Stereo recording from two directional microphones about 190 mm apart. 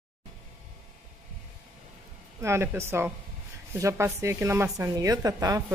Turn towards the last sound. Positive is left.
turn(degrees=-20)  # may be behind; listen again after turning